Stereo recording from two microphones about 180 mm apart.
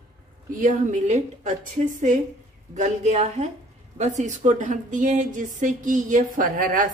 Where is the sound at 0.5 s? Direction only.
45° right (ahead or behind).